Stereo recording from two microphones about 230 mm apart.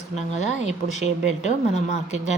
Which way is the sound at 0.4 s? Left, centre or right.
Left.